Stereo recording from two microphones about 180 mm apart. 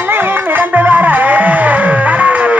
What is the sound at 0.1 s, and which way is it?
Music, 10° right (ahead or behind).